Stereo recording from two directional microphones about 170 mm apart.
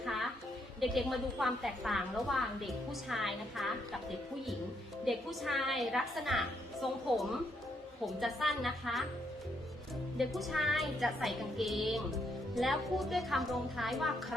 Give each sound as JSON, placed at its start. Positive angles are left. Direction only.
{"t": 0.0, "sound": "music", "side_deg": 0}
{"t": 0.8, "sound": "speech", "side_deg": 0}
{"t": 5.0, "sound": "speech", "side_deg": 0}
{"t": 8.0, "sound": "speech", "side_deg": 0}
{"t": 10.2, "sound": "speech", "side_deg": 0}